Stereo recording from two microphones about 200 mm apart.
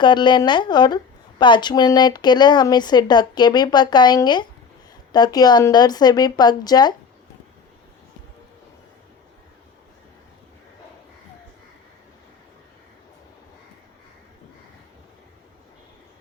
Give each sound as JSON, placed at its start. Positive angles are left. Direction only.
{"t": 0.0, "sound": "speech", "side_deg": 20}